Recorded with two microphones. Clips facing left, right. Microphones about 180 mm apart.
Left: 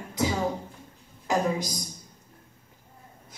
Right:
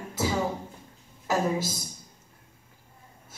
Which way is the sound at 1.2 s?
15° left (ahead or behind).